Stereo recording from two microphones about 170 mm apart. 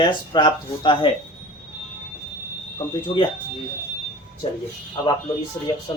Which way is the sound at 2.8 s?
30° left (ahead or behind).